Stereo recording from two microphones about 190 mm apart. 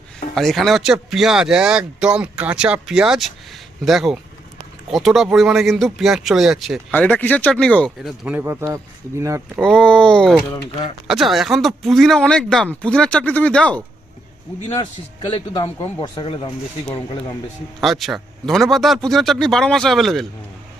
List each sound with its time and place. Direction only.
0.3 s speech: centre (ahead or behind); by 8.8 s 15° right (ahead or behind)
9.6 s speech: 5° left (ahead or behind)
10.5 s a man's voice: 25° left (ahead or behind)
11.1 s speech: centre (ahead or behind)
15.3 s a man's voice: 20° left (ahead or behind)
17.7 s speech: centre (ahead or behind)